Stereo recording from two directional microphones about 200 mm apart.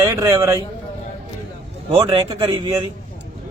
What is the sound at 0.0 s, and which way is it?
Speech, 15° right (ahead or behind).